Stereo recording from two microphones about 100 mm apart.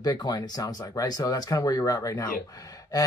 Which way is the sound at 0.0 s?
45° left (ahead or behind).